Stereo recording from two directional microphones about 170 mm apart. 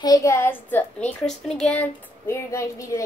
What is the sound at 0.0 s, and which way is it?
A child's voice, 20° left (ahead or behind).